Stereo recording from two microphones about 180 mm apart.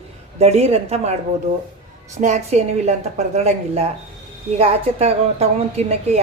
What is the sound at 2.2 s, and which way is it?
A woman's voice, 40° right (ahead or behind).